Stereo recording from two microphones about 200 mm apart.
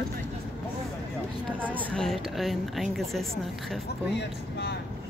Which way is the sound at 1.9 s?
5° left (ahead or behind).